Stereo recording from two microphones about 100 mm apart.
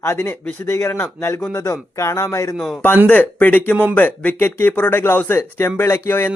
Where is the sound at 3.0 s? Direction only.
15° left (ahead or behind).